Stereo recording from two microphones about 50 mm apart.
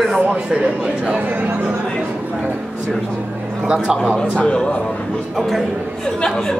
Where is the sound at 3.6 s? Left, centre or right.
Centre.